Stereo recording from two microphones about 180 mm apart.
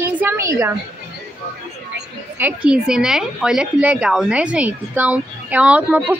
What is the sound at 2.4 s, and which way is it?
A woman's voice, 5° right (ahead or behind).